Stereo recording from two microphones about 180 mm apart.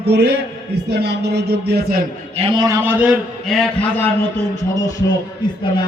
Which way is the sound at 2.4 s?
25° right (ahead or behind).